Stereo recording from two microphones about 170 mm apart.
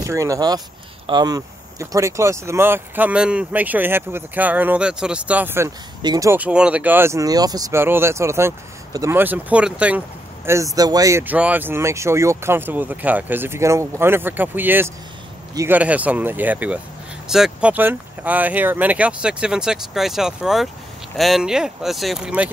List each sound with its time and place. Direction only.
0.0 s speech: 20° right (ahead or behind)